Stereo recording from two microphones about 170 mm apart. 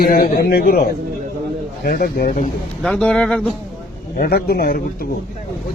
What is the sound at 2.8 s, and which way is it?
Speech, 5° left (ahead or behind).